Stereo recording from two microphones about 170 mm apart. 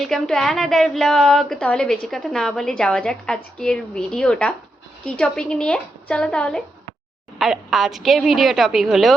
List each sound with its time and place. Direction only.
0.0 s a woman's voice: centre (ahead or behind)